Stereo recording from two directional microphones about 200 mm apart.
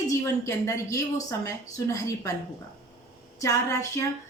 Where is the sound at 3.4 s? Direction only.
15° left (ahead or behind).